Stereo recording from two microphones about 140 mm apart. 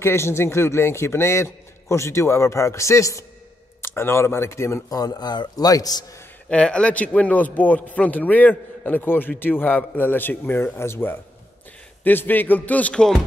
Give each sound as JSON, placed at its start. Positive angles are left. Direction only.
{"t": 0.0, "sound": "a man's voice", "side_deg": 20}
{"t": 6.5, "sound": "a man's voice", "side_deg": 5}